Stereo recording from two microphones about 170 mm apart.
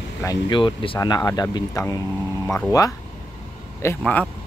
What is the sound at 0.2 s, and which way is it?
Speech, 25° left (ahead or behind).